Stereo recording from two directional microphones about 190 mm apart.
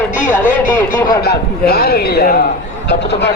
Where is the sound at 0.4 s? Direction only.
45° left (ahead or behind).